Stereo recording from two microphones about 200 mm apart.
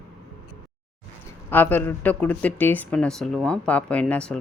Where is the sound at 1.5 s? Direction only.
10° left (ahead or behind).